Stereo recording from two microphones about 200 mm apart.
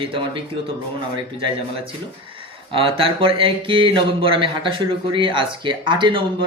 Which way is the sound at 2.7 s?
25° right (ahead or behind).